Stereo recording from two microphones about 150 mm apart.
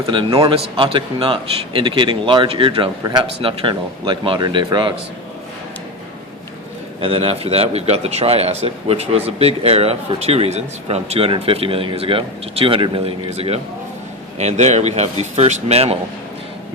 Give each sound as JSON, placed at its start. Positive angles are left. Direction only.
{"t": 0.1, "sound": "a man's voice", "side_deg": -30}
{"t": 7.0, "sound": "a man's voice", "side_deg": -40}